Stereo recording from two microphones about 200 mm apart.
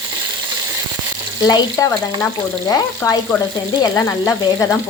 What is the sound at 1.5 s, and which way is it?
Frying, 20° left (ahead or behind).